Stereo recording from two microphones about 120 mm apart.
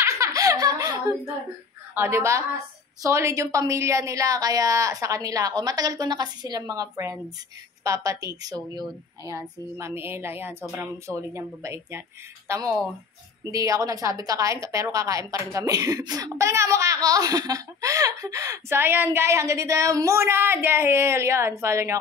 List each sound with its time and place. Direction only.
0.0 s giggle: 25° right (ahead or behind)
2.0 s a woman's voice: 25° right (ahead or behind)
9.8 s a woman's voice: 20° right (ahead or behind)